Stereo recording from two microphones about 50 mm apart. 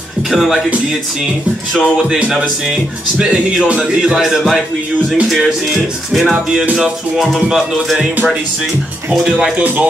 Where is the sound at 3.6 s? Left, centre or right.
Right.